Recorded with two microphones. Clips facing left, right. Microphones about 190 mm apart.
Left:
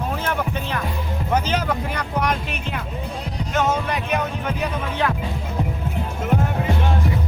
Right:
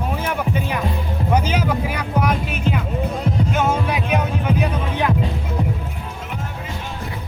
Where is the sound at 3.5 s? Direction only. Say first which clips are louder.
Left 2 dB; 10° right (ahead or behind).